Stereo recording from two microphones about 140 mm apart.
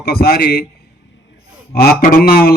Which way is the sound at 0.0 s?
90° left.